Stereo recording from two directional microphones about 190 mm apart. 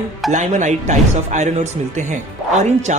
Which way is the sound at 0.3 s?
40° right (ahead or behind).